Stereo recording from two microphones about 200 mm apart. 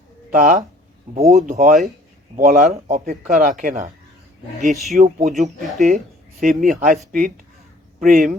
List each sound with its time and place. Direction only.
0.3 s speech: 40° right (ahead or behind)
4.6 s speech: centre (ahead or behind)
4.9 s speech: 35° right (ahead or behind)
6.4 s speech: 40° right (ahead or behind)